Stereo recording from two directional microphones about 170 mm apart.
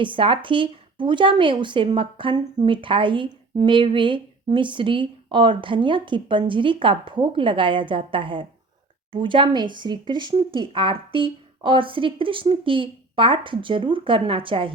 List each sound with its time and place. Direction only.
0.0 s speech: 30° right (ahead or behind)